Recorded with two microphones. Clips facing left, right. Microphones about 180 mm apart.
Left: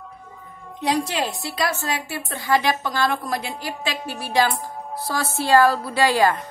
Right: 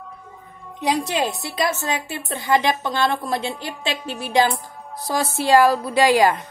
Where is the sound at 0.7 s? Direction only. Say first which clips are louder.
Right 1 dB; 20° right (ahead or behind).